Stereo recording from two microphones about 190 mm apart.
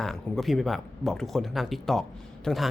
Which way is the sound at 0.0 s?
Centre (ahead or behind).